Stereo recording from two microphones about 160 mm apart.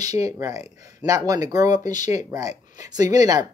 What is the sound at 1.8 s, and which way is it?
Speech, 50° left (ahead or behind).